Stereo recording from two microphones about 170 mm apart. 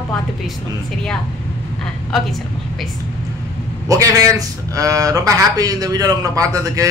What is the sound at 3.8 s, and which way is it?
A man's voice, 20° right (ahead or behind).